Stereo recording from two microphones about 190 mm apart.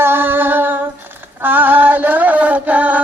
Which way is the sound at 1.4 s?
10° right (ahead or behind).